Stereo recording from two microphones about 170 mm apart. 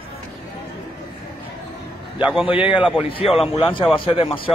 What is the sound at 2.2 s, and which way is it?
Speech, 5° right (ahead or behind).